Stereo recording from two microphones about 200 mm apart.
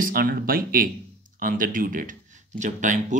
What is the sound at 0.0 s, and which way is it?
Speech, 45° right (ahead or behind).